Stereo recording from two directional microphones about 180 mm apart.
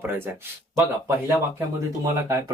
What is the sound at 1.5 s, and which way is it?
Speech, 15° right (ahead or behind).